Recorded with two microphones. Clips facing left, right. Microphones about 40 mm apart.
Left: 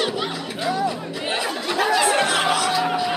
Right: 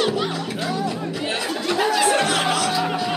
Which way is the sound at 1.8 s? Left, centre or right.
Centre.